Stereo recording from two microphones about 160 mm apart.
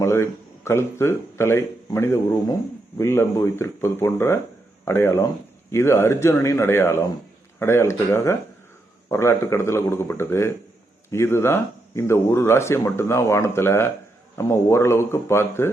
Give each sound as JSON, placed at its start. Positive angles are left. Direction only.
{"t": 0.0, "sound": "speech", "side_deg": 15}